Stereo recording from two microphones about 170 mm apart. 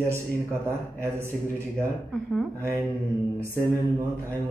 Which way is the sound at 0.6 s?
15° right (ahead or behind).